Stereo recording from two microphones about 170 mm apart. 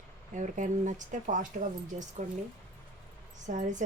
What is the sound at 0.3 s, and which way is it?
Speech, 45° right (ahead or behind).